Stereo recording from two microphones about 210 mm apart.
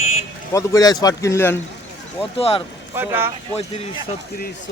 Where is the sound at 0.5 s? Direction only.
15° left (ahead or behind).